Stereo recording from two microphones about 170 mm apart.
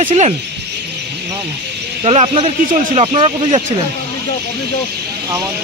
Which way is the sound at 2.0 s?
35° right (ahead or behind).